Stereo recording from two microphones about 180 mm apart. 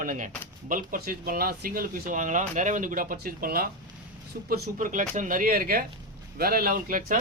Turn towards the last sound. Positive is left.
turn(degrees=-50)  # may be behind; listen again after turning